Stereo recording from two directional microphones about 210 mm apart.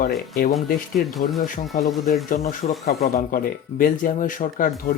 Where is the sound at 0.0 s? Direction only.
45° left (ahead or behind).